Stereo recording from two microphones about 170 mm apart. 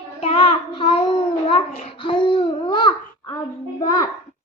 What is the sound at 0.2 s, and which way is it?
Child singing, 35° left (ahead or behind).